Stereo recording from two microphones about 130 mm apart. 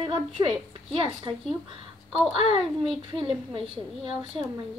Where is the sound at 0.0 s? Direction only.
40° right (ahead or behind).